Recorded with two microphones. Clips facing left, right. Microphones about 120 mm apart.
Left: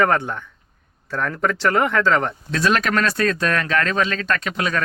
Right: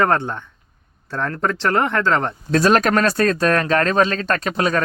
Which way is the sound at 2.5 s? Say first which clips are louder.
Right 5 dB; 40° right (ahead or behind).